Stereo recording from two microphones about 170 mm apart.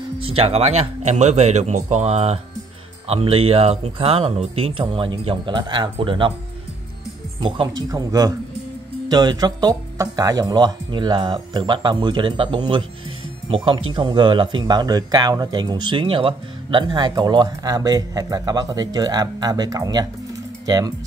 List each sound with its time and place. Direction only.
0.2 s speech: 35° right (ahead or behind)
7.3 s speech: 30° right (ahead or behind)